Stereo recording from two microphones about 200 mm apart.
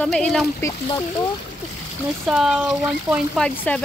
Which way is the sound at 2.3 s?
5° right (ahead or behind).